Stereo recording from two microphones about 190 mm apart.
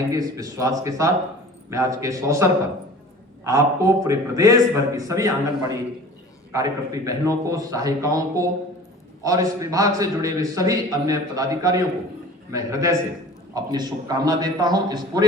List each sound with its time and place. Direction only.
0.1 s a man's voice: 20° right (ahead or behind)